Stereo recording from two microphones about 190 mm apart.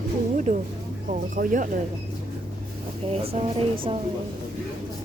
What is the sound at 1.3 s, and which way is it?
Speech, 45° right (ahead or behind).